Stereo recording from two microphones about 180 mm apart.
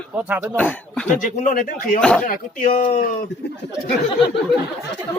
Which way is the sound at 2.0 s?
5° left (ahead or behind).